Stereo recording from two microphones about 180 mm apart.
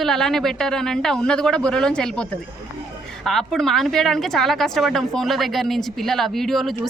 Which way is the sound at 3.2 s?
Centre (ahead or behind).